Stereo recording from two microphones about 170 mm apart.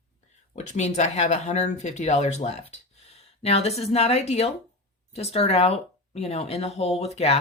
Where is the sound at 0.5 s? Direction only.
40° left (ahead or behind).